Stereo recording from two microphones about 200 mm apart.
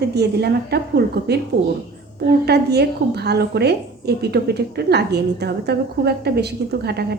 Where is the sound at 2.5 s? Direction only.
55° right (ahead or behind).